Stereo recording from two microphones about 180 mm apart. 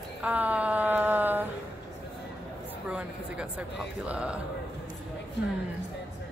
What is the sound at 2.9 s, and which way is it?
A woman's voice, 5° right (ahead or behind).